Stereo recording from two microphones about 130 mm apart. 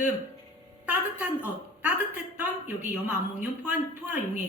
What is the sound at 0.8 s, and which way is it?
A man's voice, 10° right (ahead or behind).